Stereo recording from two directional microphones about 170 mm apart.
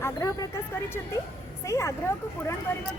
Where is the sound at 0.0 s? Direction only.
20° left (ahead or behind).